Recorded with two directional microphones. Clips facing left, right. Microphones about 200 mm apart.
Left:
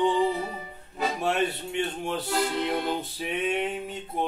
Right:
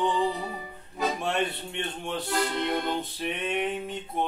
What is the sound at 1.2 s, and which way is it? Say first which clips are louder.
Music: left 2 dB; 5° left (ahead or behind).